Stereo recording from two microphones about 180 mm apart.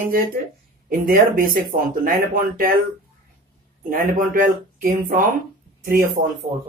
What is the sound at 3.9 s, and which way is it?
Speech, 50° right (ahead or behind).